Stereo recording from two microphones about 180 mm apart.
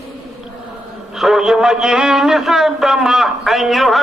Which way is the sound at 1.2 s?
Centre (ahead or behind).